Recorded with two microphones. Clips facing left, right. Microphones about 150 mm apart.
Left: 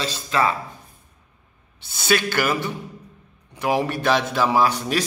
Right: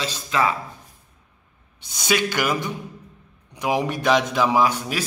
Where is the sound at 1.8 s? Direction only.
15° right (ahead or behind).